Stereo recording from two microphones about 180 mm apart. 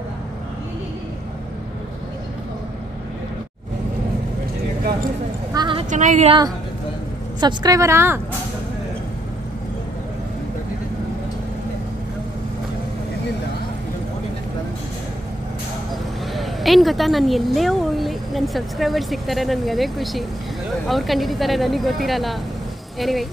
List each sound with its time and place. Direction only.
5.5 s a sound: 25° right (ahead or behind)
5.9 s a woman's voice: 45° right (ahead or behind)
7.3 s a woman's voice: 25° right (ahead or behind)
15.9 s speech: centre (ahead or behind)